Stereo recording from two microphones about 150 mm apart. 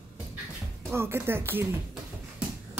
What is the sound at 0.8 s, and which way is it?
Speech, 15° right (ahead or behind).